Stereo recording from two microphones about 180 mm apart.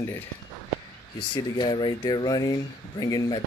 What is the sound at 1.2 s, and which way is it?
Speech, 25° left (ahead or behind).